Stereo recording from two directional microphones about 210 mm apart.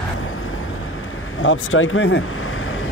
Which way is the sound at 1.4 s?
70° left (ahead or behind).